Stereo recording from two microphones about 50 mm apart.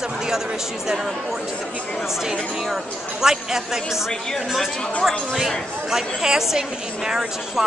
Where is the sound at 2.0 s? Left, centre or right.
Centre.